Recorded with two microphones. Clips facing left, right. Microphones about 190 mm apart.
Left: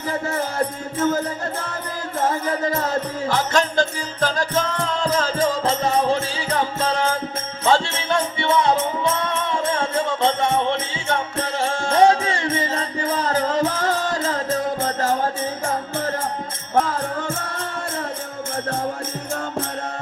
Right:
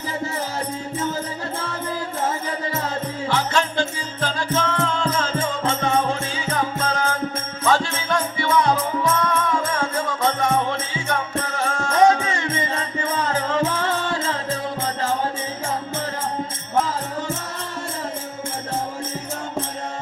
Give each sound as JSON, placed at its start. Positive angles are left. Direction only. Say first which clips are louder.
{"t": 3.2, "sound": "music", "louder": "left 1 dB", "side_deg": 40}
{"t": 16.7, "sound": "music", "louder": "left 2 dB", "side_deg": 55}